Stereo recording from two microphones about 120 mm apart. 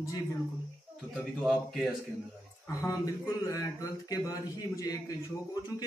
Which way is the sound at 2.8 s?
25° left (ahead or behind).